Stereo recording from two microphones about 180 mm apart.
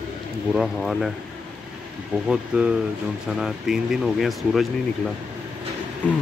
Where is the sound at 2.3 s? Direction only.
5° right (ahead or behind).